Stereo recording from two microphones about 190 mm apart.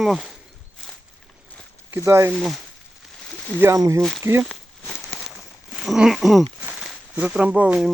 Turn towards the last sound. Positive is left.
turn(degrees=-5)  # may be behind; listen again after turning